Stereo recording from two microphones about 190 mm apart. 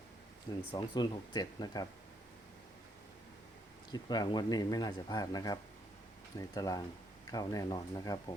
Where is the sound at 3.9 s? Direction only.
20° left (ahead or behind).